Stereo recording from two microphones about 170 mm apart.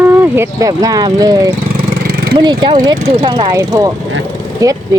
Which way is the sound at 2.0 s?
60° right (ahead or behind).